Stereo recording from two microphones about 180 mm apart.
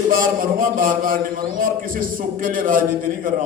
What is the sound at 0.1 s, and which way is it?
A man's voice, 50° right (ahead or behind).